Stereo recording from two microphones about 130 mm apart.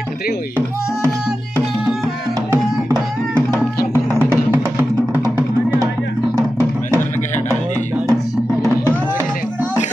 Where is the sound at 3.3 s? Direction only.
15° right (ahead or behind).